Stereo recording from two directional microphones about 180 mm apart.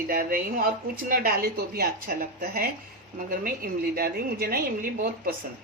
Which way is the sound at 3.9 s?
55° right (ahead or behind).